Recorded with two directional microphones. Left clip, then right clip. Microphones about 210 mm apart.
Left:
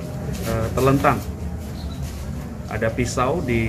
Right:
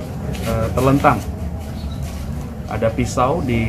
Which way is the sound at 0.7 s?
10° left (ahead or behind).